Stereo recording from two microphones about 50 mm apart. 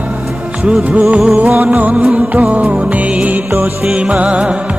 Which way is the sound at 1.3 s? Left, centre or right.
Right.